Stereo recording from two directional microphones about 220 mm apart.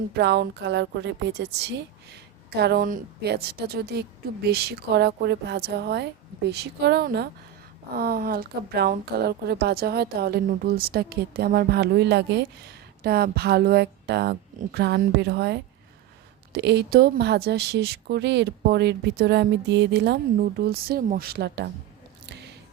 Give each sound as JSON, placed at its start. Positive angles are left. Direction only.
{"t": 0.1, "sound": "speech", "side_deg": -50}
{"t": 22.3, "sound": "squish", "side_deg": -50}